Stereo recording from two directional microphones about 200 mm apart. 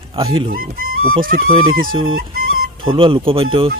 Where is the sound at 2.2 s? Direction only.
45° right (ahead or behind).